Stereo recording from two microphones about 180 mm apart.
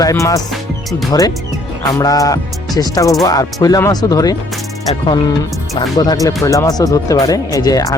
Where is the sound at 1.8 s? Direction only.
20° left (ahead or behind).